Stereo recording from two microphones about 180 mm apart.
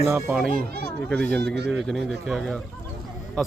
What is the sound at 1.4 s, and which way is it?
Speech, 70° right (ahead or behind).